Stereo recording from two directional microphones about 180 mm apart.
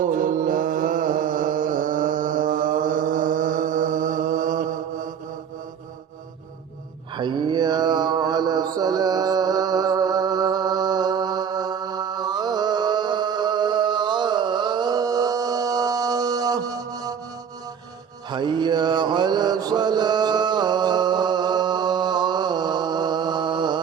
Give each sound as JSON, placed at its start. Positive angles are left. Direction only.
{"t": 0.0, "sound": "mantra", "side_deg": -50}
{"t": 7.2, "sound": "mantra", "side_deg": -25}
{"t": 18.3, "sound": "mantra", "side_deg": -25}